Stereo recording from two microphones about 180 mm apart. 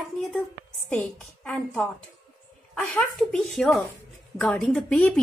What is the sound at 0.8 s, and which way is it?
A woman's voice, 5° left (ahead or behind).